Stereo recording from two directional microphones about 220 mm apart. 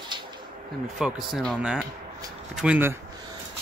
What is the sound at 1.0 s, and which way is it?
Speech, centre (ahead or behind).